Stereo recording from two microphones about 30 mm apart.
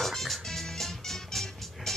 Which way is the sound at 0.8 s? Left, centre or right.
Centre.